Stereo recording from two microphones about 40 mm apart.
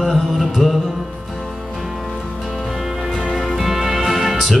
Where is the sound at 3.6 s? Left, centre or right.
Centre.